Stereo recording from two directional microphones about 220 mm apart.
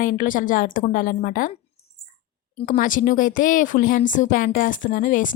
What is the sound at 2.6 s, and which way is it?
A woman's voice, 35° left (ahead or behind).